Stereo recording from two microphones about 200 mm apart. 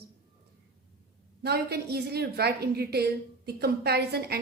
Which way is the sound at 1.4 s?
50° right (ahead or behind).